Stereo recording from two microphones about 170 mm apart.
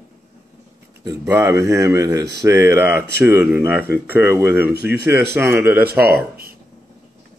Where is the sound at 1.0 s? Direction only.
15° right (ahead or behind).